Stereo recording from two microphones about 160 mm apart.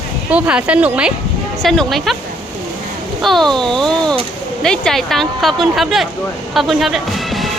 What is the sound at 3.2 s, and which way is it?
A woman's voice, centre (ahead or behind).